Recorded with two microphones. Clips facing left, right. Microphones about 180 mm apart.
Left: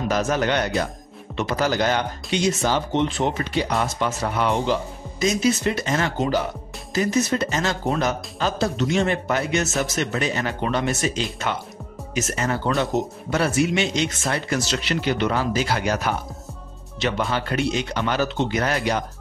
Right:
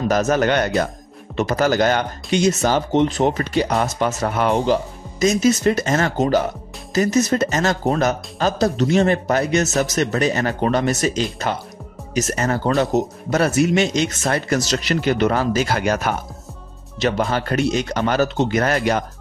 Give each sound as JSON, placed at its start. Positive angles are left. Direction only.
{"t": 0.1, "sound": "speech", "side_deg": -45}